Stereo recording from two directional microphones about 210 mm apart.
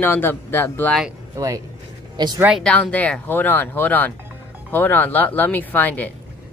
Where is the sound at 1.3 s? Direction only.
15° right (ahead or behind).